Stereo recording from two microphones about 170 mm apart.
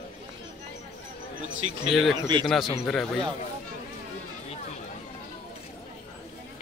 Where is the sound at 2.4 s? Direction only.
Centre (ahead or behind).